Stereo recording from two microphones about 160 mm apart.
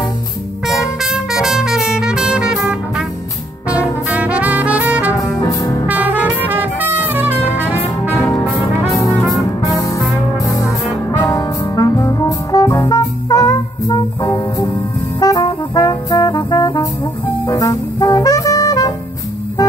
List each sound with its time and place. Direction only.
0.7 s music: centre (ahead or behind)
4.1 s music: 10° right (ahead or behind)
5.4 s music: 20° left (ahead or behind)
5.9 s music: 10° right (ahead or behind)
8.4 s brass instrument: 20° left (ahead or behind)
9.3 s music: 20° left (ahead or behind)
10.5 s brass instrument: 20° left (ahead or behind)
15.1 s music: 20° left (ahead or behind)